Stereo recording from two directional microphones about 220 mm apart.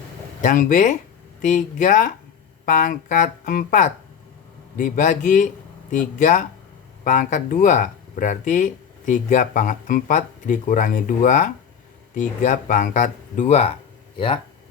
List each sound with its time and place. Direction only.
0.4 s speech: 35° left (ahead or behind)